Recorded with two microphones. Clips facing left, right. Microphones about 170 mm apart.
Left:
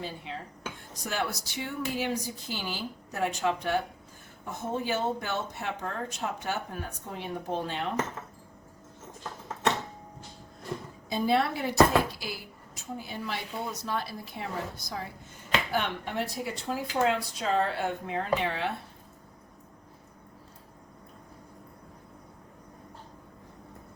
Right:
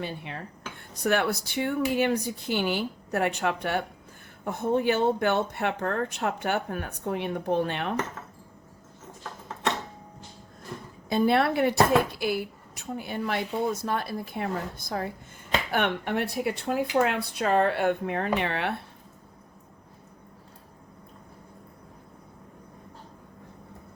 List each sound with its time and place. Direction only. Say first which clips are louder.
0.0 s speech: right 3 dB; 65° right (ahead or behind)
11.1 s speech: right 4 dB; 60° right (ahead or behind)